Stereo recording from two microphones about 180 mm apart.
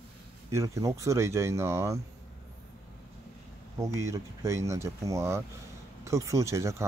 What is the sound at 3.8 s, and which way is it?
Speech, 15° right (ahead or behind).